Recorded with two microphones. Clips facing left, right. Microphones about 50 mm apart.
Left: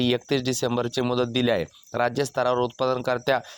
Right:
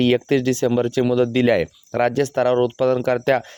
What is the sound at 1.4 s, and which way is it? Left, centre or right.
Speech, right.